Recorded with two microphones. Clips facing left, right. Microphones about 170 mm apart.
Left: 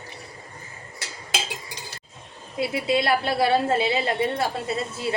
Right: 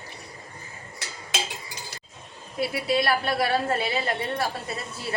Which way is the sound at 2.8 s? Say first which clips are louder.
Left 2 dB; 25° left (ahead or behind).